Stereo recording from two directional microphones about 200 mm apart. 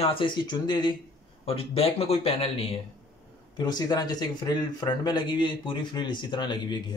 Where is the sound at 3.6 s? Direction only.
20° left (ahead or behind).